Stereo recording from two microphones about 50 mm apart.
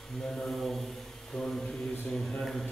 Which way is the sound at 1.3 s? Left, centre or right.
Centre.